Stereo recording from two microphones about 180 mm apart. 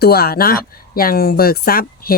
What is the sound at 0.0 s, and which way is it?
Speech, 60° left (ahead or behind).